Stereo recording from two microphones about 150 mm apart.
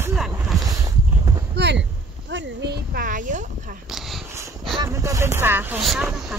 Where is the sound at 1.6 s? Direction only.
90° right.